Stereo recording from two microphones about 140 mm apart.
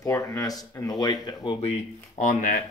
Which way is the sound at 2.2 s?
70° left (ahead or behind).